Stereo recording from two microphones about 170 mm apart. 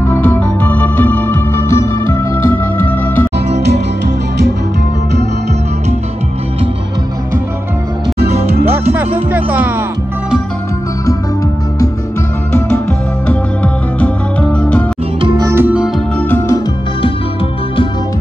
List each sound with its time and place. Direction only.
0.0 s music: 10° left (ahead or behind)
8.2 s music: 70° right (ahead or behind)
8.9 s music: 10° right (ahead or behind)
13.3 s music: 10° left (ahead or behind)
15.1 s music: 30° right (ahead or behind)
15.4 s music: 15° right (ahead or behind)
16.2 s music: 10° left (ahead or behind)